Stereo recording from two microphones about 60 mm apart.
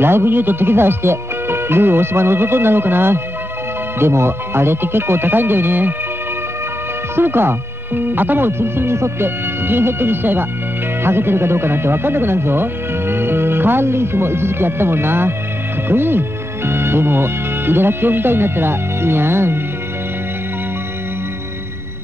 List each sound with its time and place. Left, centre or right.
0.0 s speech: right
7.2 s speech: right